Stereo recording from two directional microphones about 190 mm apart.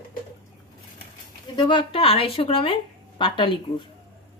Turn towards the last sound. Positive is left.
turn(degrees=25)  # may be behind; listen again after turning